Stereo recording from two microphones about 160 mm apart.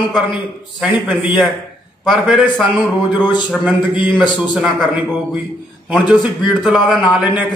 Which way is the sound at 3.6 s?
10° right (ahead or behind).